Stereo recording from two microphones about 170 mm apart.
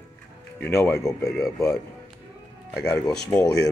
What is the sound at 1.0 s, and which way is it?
Speech, centre (ahead or behind).